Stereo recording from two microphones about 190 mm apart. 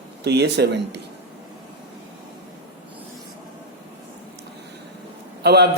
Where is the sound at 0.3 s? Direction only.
60° right (ahead or behind).